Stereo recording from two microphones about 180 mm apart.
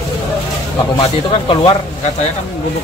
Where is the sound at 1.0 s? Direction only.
30° left (ahead or behind).